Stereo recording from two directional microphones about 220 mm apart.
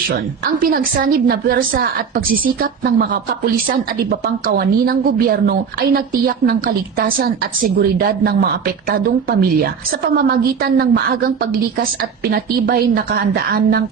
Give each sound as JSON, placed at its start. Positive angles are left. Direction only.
{"t": 0.6, "sound": "a woman's voice", "side_deg": -40}